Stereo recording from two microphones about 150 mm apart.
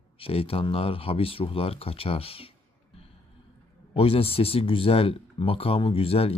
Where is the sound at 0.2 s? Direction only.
40° left (ahead or behind).